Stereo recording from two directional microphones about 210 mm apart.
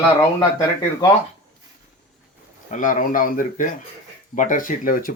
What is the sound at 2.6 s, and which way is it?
Speech, 40° left (ahead or behind).